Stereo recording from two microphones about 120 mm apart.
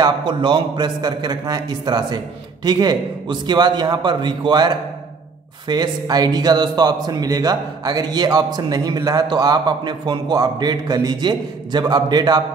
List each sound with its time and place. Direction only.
0.0 s a man's voice: 40° right (ahead or behind)